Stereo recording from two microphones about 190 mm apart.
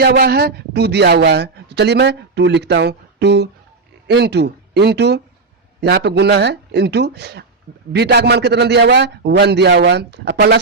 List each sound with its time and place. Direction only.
0.0 s a man's voice: 55° right (ahead or behind)